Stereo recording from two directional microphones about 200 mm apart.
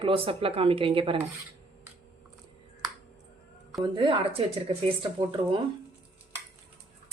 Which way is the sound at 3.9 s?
25° right (ahead or behind).